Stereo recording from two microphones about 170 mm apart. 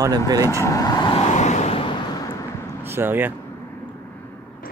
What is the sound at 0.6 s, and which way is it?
Vehicle, 20° left (ahead or behind).